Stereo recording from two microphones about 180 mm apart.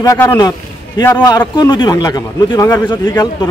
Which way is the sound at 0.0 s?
15° left (ahead or behind).